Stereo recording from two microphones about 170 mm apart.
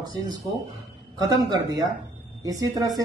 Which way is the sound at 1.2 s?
20° right (ahead or behind).